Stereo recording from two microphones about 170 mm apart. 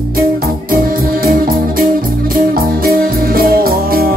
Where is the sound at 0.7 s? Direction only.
60° right (ahead or behind).